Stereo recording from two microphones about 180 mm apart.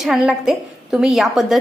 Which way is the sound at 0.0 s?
5° right (ahead or behind).